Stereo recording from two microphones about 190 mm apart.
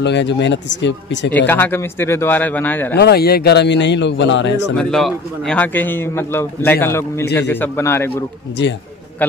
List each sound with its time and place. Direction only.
0.0 s speech: 65° left (ahead or behind)
1.3 s a man's voice: 10° left (ahead or behind)
3.0 s speech: 55° left (ahead or behind); by 4.7 s 70° left (ahead or behind)
4.7 s a man's voice: centre (ahead or behind)